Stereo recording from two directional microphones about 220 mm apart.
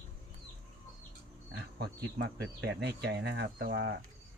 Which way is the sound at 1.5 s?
50° right (ahead or behind).